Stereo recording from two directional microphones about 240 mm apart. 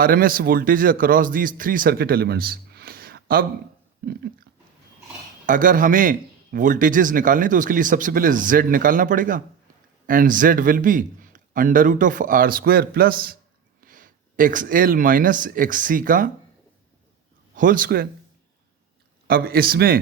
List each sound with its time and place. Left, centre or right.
0.0 s a man's voice: right
5.5 s a man's voice: right
17.6 s a man's voice: right
19.3 s a man's voice: right